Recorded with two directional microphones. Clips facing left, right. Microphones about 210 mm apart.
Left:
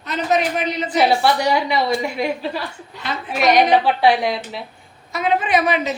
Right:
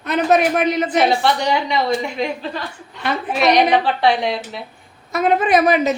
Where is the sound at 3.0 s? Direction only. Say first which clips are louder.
Right 5 dB; 55° right (ahead or behind).